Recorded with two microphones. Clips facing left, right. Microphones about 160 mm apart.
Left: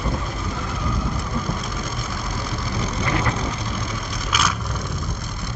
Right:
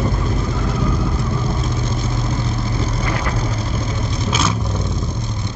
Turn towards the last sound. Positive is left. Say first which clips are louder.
# right 4 dB
turn(degrees=-25)  # may be behind; listen again after turning